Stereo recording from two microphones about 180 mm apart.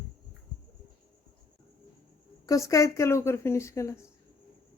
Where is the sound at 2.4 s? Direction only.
20° left (ahead or behind).